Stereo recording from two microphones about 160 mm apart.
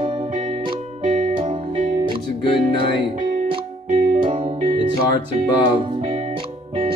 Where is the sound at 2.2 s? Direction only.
30° left (ahead or behind).